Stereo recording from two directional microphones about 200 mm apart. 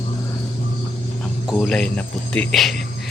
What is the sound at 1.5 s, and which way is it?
Speech, centre (ahead or behind).